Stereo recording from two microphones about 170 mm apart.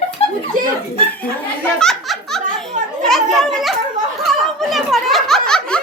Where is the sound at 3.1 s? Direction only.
Centre (ahead or behind).